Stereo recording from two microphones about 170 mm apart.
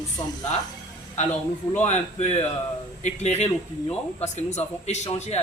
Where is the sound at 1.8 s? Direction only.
40° left (ahead or behind).